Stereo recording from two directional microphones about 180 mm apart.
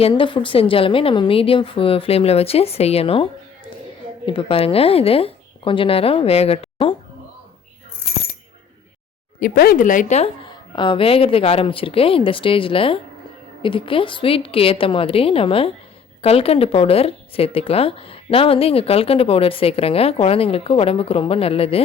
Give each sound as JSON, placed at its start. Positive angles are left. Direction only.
{"t": 0.0, "sound": "a woman's voice", "side_deg": 30}
{"t": 4.3, "sound": "a woman's voice", "side_deg": 30}
{"t": 9.4, "sound": "speech", "side_deg": 55}
{"t": 10.4, "sound": "a woman's voice", "side_deg": 25}